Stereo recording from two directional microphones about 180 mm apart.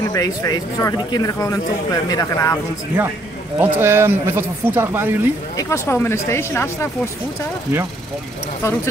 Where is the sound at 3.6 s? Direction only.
15° right (ahead or behind).